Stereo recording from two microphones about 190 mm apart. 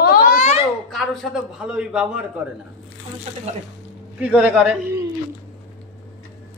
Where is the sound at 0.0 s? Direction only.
50° left (ahead or behind).